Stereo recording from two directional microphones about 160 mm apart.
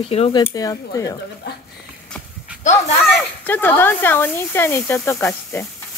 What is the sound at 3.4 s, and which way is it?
Speech, 15° left (ahead or behind).